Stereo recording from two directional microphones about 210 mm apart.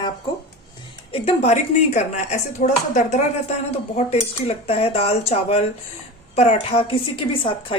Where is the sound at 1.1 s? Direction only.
30° left (ahead or behind).